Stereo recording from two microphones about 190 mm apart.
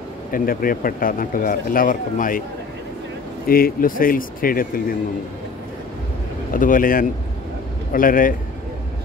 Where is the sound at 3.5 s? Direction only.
50° left (ahead or behind).